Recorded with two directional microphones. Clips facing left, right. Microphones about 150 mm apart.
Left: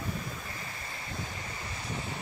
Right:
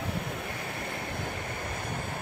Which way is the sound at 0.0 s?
65° right (ahead or behind).